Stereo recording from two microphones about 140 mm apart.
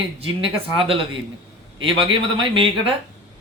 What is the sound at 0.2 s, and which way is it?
Speech, 40° right (ahead or behind).